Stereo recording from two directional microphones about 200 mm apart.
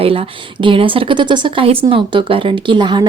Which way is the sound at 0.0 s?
30° right (ahead or behind).